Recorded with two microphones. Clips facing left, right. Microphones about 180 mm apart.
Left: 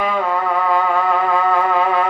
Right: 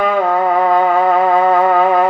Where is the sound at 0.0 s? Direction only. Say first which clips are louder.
Right 5 dB; 45° right (ahead or behind).